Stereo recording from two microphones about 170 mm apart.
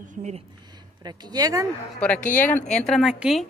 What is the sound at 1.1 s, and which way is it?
Speech, 25° right (ahead or behind).